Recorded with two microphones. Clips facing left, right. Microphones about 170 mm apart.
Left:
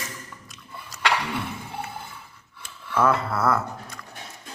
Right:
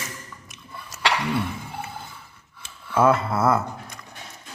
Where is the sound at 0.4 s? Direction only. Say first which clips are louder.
Right 1 dB; 20° right (ahead or behind).